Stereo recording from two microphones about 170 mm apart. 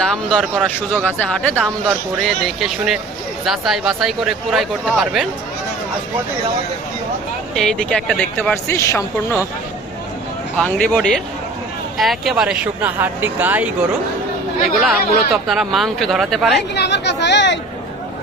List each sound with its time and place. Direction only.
0.0 s speech: 5° left (ahead or behind)
7.5 s speech: 5° left (ahead or behind)
10.6 s speech: 5° left (ahead or behind); by 13.7 s 10° right (ahead or behind)
14.8 s speech: centre (ahead or behind)
16.7 s speech: 85° left